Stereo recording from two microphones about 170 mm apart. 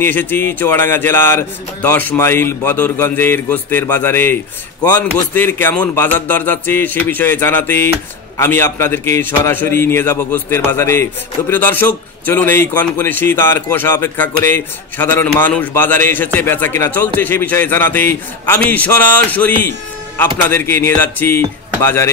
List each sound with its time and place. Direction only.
0.0 s a man's voice: 10° left (ahead or behind)